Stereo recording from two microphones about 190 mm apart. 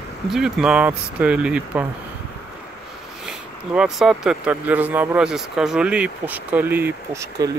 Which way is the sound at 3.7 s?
Centre (ahead or behind).